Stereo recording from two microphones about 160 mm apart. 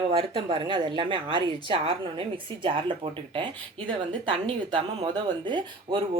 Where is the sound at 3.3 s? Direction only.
30° right (ahead or behind).